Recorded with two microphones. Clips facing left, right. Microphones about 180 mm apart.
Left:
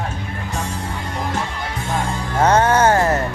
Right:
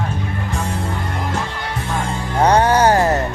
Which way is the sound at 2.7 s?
35° right (ahead or behind).